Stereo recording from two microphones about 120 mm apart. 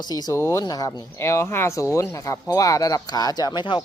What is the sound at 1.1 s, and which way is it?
Speech, 25° left (ahead or behind).